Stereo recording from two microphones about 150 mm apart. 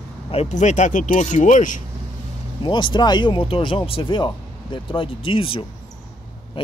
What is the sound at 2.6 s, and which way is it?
Speech, 30° left (ahead or behind).